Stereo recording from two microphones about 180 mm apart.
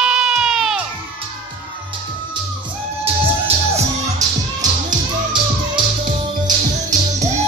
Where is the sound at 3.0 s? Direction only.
35° right (ahead or behind).